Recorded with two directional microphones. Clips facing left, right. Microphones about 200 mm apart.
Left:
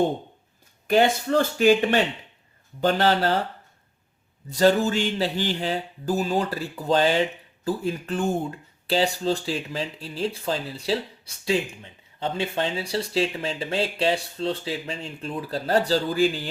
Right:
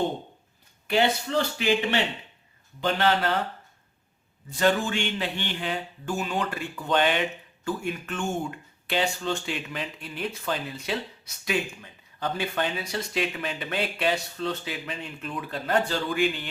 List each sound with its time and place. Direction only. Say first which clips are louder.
0.9 s speech: left 4 dB; 45° left (ahead or behind)
4.4 s speech: left 5 dB; 40° left (ahead or behind)